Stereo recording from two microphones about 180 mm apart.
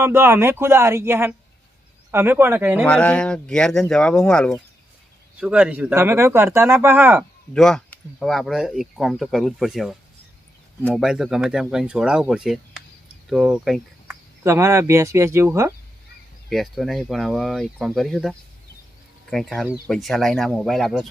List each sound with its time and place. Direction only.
0.0 s speech: 15° right (ahead or behind)
2.8 s speech: 5° left (ahead or behind); by 7.3 s 10° right (ahead or behind)
7.5 s speech: 5° left (ahead or behind)
14.4 s speech: 15° right (ahead or behind)
16.5 s speech: centre (ahead or behind)